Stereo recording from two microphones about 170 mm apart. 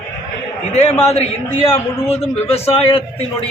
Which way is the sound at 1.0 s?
35° left (ahead or behind).